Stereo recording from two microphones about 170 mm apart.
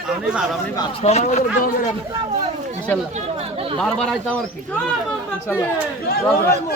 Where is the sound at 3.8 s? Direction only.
5° left (ahead or behind).